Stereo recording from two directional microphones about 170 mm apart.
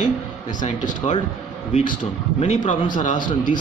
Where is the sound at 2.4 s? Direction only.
45° left (ahead or behind).